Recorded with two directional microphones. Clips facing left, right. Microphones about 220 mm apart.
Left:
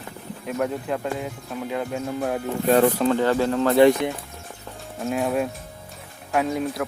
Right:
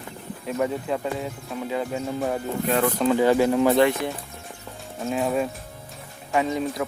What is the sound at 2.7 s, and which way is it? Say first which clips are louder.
Speech: left 6 dB; 40° left (ahead or behind).